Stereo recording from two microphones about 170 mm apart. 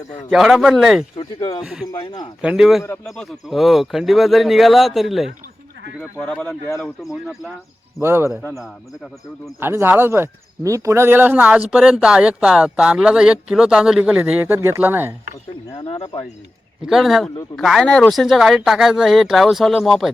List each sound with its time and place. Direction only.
0.3 s speech: centre (ahead or behind)
1.2 s speech: 25° left (ahead or behind)
1.6 s speech: centre (ahead or behind)
1.9 s speech: 25° left (ahead or behind)
2.4 s speech: 5° right (ahead or behind)
2.8 s speech: 15° left (ahead or behind)
3.1 s speech: centre (ahead or behind)
8.0 s speech: 15° right (ahead or behind)
9.6 s speech: 15° right (ahead or behind)
15.8 s speech: 30° left (ahead or behind)
16.8 s speech: centre (ahead or behind)